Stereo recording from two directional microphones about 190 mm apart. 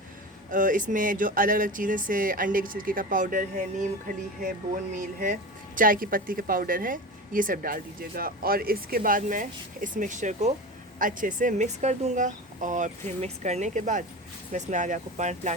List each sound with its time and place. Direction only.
0.5 s speech: 45° right (ahead or behind)